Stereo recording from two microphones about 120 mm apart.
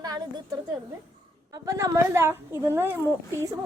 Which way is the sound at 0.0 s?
35° right (ahead or behind).